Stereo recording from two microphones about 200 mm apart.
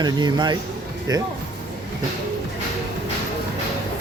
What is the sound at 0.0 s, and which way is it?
Speech, 20° right (ahead or behind).